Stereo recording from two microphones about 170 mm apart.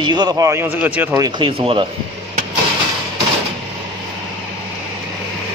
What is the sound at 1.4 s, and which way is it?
Speech, 30° right (ahead or behind).